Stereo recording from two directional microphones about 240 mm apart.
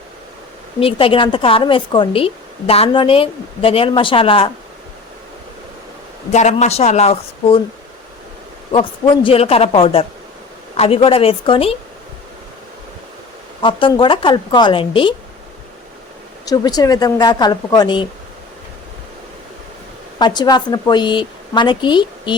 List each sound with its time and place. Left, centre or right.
0.8 s speech: left
6.3 s speech: left
8.7 s speech: left
13.6 s speech: left
16.5 s a woman's voice: centre
20.1 s speech: centre